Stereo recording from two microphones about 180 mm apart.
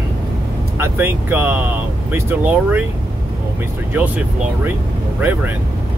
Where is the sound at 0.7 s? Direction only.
10° right (ahead or behind).